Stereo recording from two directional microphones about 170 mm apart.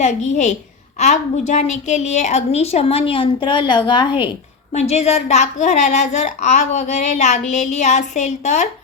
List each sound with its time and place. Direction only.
0.0 s a woman's voice: 45° left (ahead or behind); by 4.3 s 25° left (ahead or behind)
4.7 s speech: 40° left (ahead or behind)